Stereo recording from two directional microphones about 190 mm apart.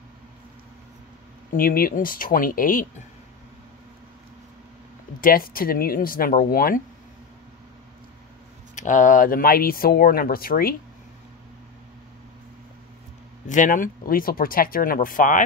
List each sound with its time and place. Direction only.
1.5 s speech: 50° left (ahead or behind)
5.2 s speech: 50° left (ahead or behind)
8.7 s speech: 40° left (ahead or behind)
13.5 s speech: 45° left (ahead or behind)